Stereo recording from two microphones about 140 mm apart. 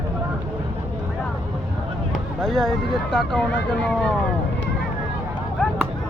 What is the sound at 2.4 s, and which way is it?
Speech, centre (ahead or behind).